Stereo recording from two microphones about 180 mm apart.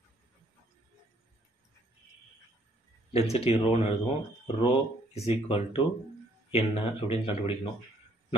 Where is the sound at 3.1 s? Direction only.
35° left (ahead or behind).